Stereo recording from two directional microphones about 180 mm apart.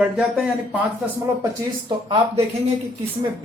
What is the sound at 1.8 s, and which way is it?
Speech, 25° right (ahead or behind).